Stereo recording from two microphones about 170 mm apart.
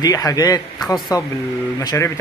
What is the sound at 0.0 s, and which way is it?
A man's voice, 20° left (ahead or behind).